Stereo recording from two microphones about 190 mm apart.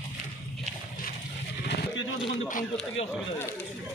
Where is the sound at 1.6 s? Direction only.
70° left (ahead or behind).